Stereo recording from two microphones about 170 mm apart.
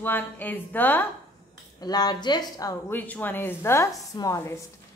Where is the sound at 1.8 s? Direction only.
25° left (ahead or behind).